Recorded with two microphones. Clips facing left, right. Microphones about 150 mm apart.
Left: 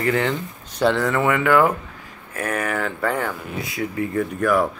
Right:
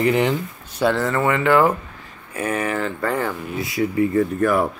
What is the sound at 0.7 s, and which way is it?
Speech, 5° right (ahead or behind).